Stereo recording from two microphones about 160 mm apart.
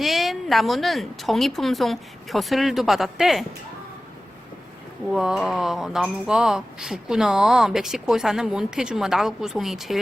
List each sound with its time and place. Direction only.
0.0 s speech: centre (ahead or behind)
5.1 s speech: 5° right (ahead or behind)